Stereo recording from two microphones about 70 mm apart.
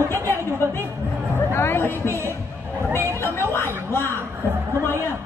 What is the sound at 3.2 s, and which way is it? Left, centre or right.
Speech, left.